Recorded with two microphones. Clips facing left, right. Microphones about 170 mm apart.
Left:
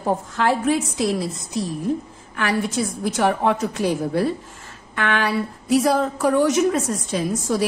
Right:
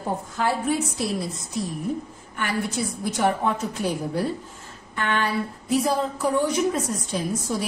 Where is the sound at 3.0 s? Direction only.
90° left.